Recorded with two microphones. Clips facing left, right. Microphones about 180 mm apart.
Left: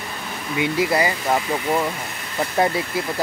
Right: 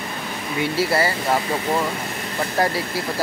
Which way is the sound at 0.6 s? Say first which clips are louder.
Left 1 dB; 15° left (ahead or behind).